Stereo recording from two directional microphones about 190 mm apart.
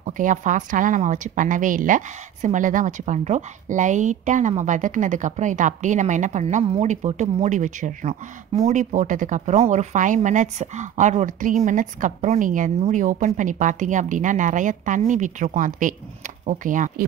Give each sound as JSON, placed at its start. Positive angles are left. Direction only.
{"t": 0.0, "sound": "speech", "side_deg": -40}